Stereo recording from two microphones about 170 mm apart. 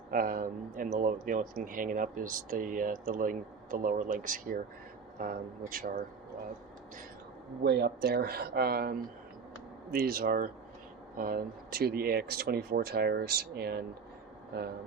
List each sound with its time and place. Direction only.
0.1 s speech: 55° right (ahead or behind)
7.6 s speech: 75° right (ahead or behind)